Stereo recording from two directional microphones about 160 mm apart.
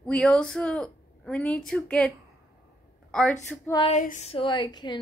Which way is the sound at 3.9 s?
50° left (ahead or behind).